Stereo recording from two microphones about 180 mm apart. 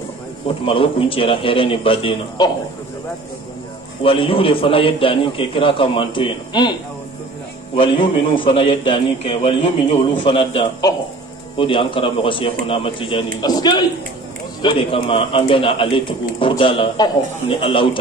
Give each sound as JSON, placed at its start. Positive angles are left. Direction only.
{"t": 0.7, "sound": "a man's voice", "side_deg": 30}
{"t": 4.0, "sound": "a man's voice", "side_deg": 30}